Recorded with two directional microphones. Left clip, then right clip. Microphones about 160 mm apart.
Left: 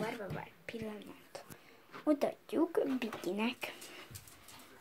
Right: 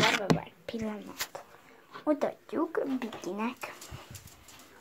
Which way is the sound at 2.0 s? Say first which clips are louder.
Right 3 dB; 15° left (ahead or behind).